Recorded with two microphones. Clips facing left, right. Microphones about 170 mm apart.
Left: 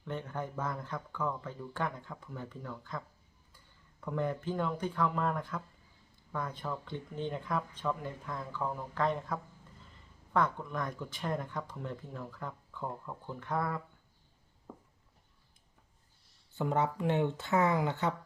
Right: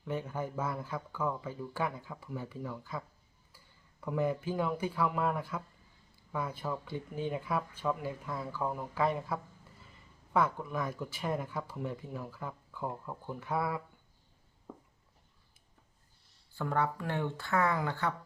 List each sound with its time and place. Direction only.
0.0 s speech: 10° right (ahead or behind)
4.0 s speech: 5° right (ahead or behind)
14.7 s a sound: centre (ahead or behind)
16.6 s speech: 20° left (ahead or behind)